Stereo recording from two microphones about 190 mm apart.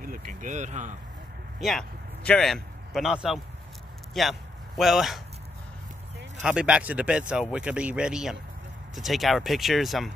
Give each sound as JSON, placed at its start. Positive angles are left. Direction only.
{"t": 0.0, "sound": "speech", "side_deg": -45}
{"t": 1.6, "sound": "a man's voice", "side_deg": 0}
{"t": 6.4, "sound": "speech", "side_deg": -5}